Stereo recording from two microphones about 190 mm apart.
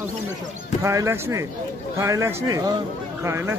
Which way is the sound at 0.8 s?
15° right (ahead or behind).